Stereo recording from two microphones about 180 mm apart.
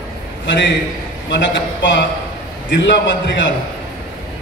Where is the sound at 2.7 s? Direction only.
80° left.